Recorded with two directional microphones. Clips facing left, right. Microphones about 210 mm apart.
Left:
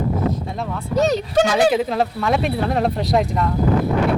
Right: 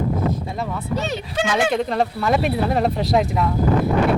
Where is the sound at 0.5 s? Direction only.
Centre (ahead or behind).